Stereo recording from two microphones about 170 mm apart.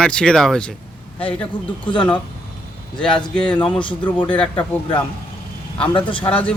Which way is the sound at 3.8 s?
30° left (ahead or behind).